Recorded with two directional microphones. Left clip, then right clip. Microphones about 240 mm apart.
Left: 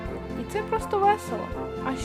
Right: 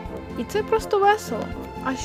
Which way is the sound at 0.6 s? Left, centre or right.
Centre.